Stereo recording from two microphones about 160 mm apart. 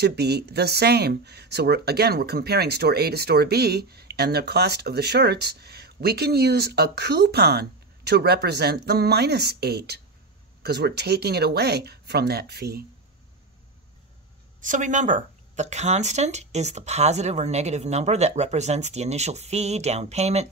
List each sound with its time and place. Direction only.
0.0 s speech: 90° right
14.6 s speech: 50° right (ahead or behind)